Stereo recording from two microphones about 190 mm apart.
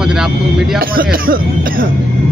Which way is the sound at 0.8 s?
50° right (ahead or behind).